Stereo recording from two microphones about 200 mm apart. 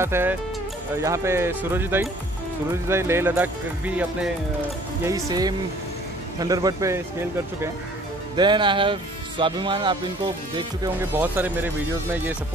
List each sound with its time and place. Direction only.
0.0 s speech: 10° right (ahead or behind)
5.0 s speech: 20° right (ahead or behind)
8.4 s speech: 20° right (ahead or behind)
11.0 s speech: 10° right (ahead or behind)